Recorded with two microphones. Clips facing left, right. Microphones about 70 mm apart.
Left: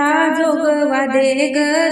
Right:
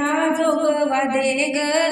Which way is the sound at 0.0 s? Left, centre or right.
Left.